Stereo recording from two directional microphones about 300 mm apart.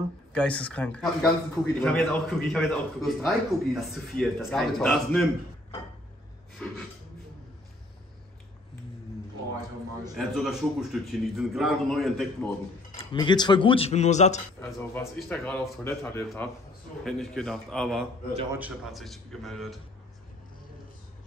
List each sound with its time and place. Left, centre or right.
0.3 s a man's voice: centre
6.6 s a man's voice: centre
10.1 s a man's voice: centre
12.9 s speech: centre
14.6 s a man's voice: centre
18.3 s a man's voice: centre
18.6 s a man's voice: centre